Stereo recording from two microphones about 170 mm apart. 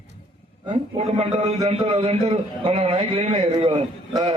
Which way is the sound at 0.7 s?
35° right (ahead or behind).